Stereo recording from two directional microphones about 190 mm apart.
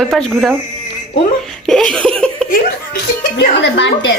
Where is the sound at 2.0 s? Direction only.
5° left (ahead or behind).